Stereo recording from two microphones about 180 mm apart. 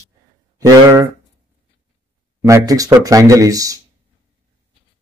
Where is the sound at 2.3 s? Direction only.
15° right (ahead or behind).